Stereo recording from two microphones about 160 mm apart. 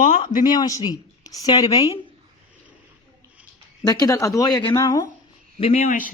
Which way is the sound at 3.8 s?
25° left (ahead or behind).